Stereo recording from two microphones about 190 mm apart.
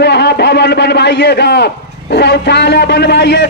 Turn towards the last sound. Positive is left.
turn(degrees=60)  # may be behind; listen again after turning